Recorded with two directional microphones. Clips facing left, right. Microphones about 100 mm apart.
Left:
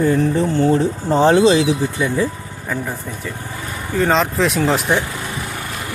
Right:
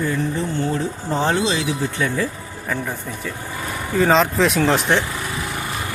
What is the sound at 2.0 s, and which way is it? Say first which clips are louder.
Speech: left 3 dB; 15° left (ahead or behind).